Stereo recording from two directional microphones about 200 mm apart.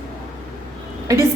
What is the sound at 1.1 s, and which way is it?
Speech, 15° right (ahead or behind).